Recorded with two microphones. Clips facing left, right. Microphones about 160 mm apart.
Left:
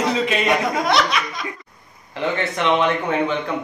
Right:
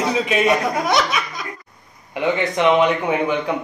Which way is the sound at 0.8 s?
5° right (ahead or behind).